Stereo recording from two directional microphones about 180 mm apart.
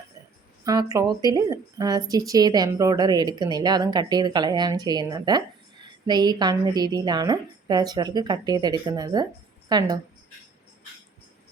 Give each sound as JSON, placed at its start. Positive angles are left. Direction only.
{"t": 0.6, "sound": "a woman's voice", "side_deg": -20}